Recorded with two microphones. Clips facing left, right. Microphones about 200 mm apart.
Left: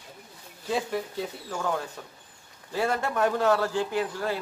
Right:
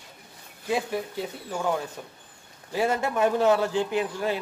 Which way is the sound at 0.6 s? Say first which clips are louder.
Right 1 dB; 10° right (ahead or behind).